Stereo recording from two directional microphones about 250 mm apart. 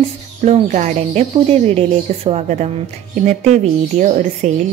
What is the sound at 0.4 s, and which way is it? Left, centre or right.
Speech, right.